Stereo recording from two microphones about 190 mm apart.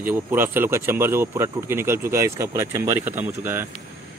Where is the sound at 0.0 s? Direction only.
10° right (ahead or behind).